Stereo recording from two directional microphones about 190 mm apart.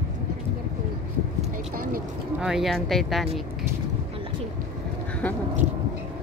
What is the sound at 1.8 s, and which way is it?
Vehicle, 50° right (ahead or behind).